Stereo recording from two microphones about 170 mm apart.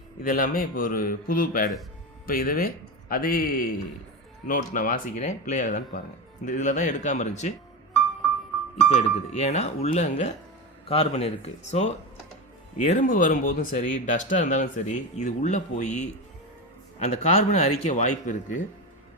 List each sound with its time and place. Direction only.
0.2 s a man's voice: 55° left (ahead or behind)
8.9 s speech: 40° left (ahead or behind)